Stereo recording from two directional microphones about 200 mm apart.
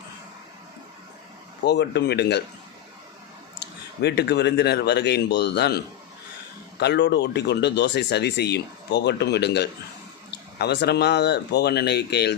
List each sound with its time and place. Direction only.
1.6 s speech: 55° left (ahead or behind)
4.0 s speech: 55° left (ahead or behind)